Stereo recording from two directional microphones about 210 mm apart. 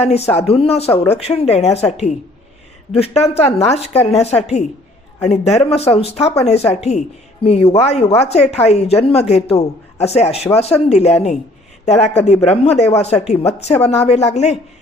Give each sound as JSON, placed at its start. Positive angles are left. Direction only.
{"t": 0.0, "sound": "speech", "side_deg": 30}
{"t": 2.9, "sound": "speech", "side_deg": 30}